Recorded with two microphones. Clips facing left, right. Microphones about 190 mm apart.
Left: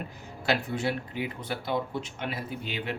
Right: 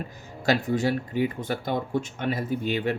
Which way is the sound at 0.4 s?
40° right (ahead or behind).